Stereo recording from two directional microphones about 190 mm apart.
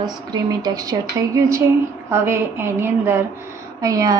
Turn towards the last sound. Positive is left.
turn(degrees=-20)  # may be behind; listen again after turning